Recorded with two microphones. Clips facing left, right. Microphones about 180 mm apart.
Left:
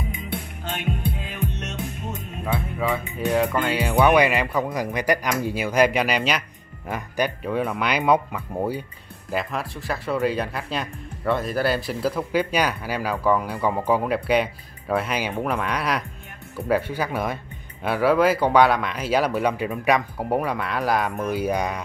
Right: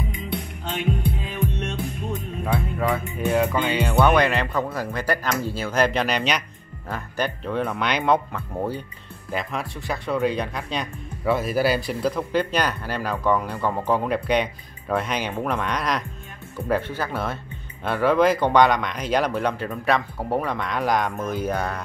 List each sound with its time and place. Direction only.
0.1 s music: 50° left (ahead or behind); by 1.7 s 65° left (ahead or behind)
2.4 s music: centre (ahead or behind)
3.7 s speech: 10° left (ahead or behind)